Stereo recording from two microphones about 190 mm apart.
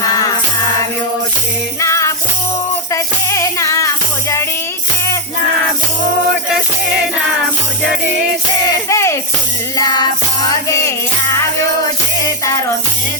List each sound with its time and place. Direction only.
1.8 s music: 15° left (ahead or behind)
8.0 s music: 60° right (ahead or behind)
8.7 s a sound: 15° left (ahead or behind)
9.7 s music: 20° left (ahead or behind)
12.5 s music: 15° left (ahead or behind)